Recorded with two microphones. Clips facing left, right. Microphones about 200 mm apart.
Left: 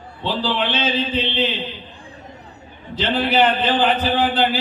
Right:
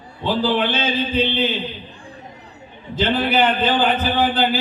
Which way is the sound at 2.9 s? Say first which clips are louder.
Right 1 dB; 50° right (ahead or behind).